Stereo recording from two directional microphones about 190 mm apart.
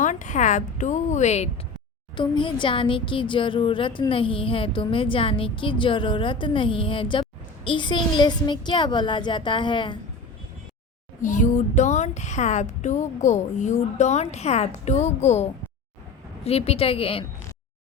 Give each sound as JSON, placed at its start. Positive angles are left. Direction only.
{"t": 0.0, "sound": "speech", "side_deg": 40}
{"t": 2.1, "sound": "speech", "side_deg": 25}
{"t": 11.2, "sound": "speech", "side_deg": 40}